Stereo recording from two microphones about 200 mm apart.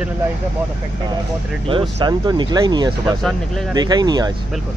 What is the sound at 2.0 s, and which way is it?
Speech, 20° right (ahead or behind).